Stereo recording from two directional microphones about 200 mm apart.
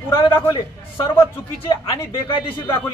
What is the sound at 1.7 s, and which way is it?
Speech, 25° left (ahead or behind).